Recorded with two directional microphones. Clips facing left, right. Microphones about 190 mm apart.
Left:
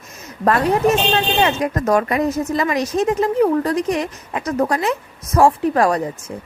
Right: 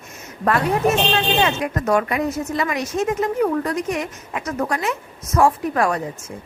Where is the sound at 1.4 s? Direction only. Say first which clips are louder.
Left 3 dB; 40° left (ahead or behind).